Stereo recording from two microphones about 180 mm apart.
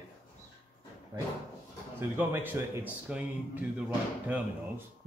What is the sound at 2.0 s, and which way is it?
Speech, 10° right (ahead or behind).